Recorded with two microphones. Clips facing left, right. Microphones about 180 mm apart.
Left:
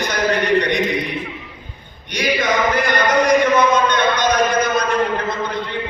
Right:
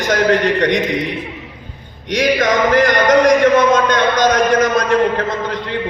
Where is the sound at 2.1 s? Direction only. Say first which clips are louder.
Right 5 dB; 90° right.